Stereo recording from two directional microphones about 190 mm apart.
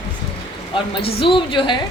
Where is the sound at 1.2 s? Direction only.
25° left (ahead or behind).